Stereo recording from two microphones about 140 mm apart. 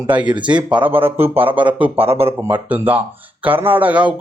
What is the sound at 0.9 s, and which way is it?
Speech, 15° right (ahead or behind).